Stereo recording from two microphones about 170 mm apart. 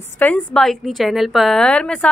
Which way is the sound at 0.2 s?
10° left (ahead or behind).